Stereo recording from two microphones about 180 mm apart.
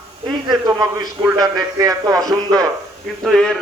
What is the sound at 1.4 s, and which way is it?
Speech, 20° right (ahead or behind).